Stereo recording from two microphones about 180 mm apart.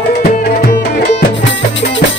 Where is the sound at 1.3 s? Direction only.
90° left.